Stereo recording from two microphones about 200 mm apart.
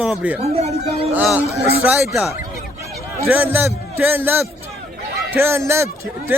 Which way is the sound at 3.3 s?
10° right (ahead or behind).